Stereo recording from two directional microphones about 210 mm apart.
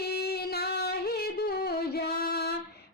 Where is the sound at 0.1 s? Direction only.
50° left (ahead or behind).